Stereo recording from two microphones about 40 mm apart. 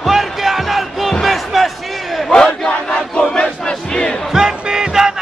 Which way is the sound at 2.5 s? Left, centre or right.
Left.